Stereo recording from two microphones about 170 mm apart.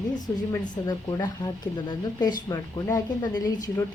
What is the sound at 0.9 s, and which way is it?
A woman's voice, 25° left (ahead or behind).